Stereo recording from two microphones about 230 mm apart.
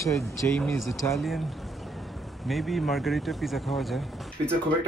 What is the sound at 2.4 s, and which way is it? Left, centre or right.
Speech, centre.